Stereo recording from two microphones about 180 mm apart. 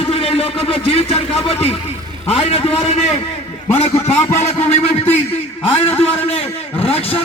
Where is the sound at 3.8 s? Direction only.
35° left (ahead or behind).